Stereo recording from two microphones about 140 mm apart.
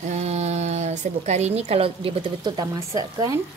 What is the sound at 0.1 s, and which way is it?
A woman's voice, 50° right (ahead or behind).